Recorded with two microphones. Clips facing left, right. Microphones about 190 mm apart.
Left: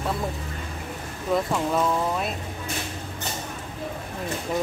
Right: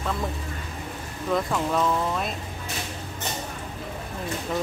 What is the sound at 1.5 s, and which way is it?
Speech, 5° left (ahead or behind).